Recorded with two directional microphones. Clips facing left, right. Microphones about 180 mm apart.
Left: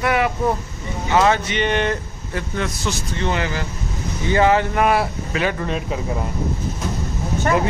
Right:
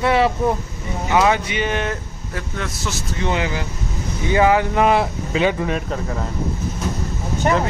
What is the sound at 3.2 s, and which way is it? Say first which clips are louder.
Speech: right 1 dB; 15° right (ahead or behind).